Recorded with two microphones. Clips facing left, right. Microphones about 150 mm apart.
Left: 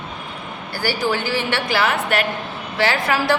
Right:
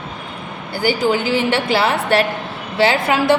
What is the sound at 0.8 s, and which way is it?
A woman's voice, 20° right (ahead or behind).